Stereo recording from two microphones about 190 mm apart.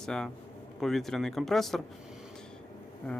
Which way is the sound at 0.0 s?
5° left (ahead or behind).